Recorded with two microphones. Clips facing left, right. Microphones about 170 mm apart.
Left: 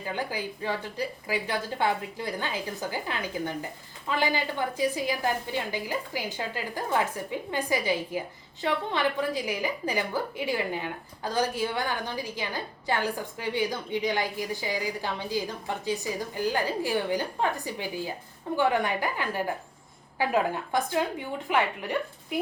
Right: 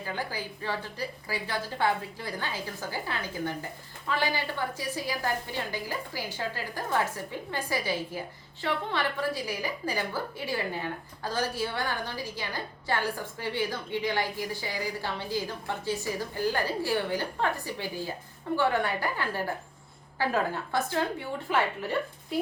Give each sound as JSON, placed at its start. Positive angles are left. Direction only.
{"t": 0.0, "sound": "a woman's voice", "side_deg": 15}